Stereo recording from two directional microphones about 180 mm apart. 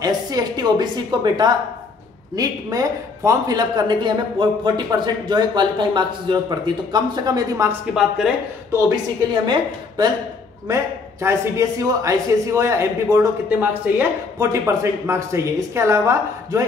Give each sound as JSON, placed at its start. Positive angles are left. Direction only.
{"t": 0.0, "sound": "speech", "side_deg": -20}
{"t": 7.9, "sound": "speech", "side_deg": 0}
{"t": 9.5, "sound": "speech", "side_deg": -25}